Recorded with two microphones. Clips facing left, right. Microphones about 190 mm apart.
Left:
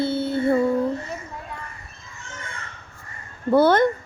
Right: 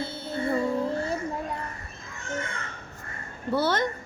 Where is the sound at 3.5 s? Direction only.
55° left (ahead or behind).